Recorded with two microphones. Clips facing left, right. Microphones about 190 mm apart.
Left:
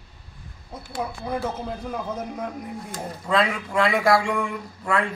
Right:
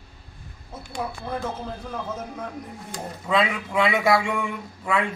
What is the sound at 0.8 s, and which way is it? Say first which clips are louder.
Speech: left 1 dB; 5° left (ahead or behind).